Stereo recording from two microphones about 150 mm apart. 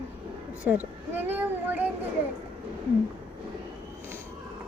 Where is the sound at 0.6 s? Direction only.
10° right (ahead or behind).